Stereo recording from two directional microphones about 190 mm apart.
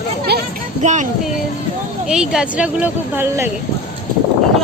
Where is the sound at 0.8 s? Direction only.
40° right (ahead or behind).